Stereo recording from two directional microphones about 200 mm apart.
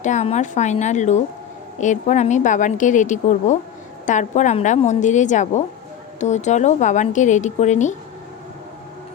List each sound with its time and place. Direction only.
0.0 s a woman's voice: 35° left (ahead or behind)